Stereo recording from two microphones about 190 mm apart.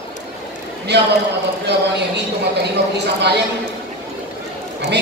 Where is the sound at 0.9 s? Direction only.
60° right (ahead or behind).